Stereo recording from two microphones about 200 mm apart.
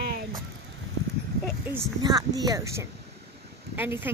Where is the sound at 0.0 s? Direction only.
50° right (ahead or behind).